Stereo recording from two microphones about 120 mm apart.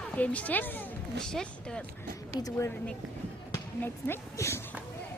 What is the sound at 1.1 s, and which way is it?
Speech, 5° left (ahead or behind).